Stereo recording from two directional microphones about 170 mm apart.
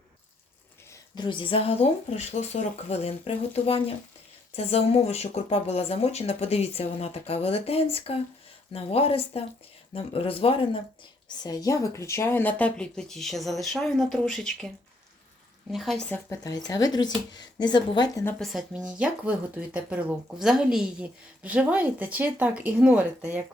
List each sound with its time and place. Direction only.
0.9 s speech: 25° left (ahead or behind)
11.4 s speech: 20° left (ahead or behind); by 14.7 s 5° left (ahead or behind)
15.7 s speech: centre (ahead or behind)
16.3 s a woman's voice: 20° left (ahead or behind)
18.3 s speech: centre (ahead or behind)